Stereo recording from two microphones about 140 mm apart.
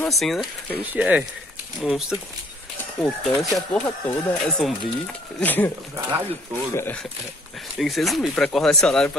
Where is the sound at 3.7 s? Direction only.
10° left (ahead or behind).